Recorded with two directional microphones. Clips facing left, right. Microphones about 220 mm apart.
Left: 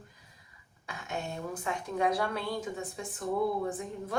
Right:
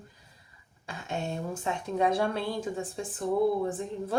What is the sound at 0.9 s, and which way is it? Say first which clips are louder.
A woman's voice: right 3 dB; 25° right (ahead or behind).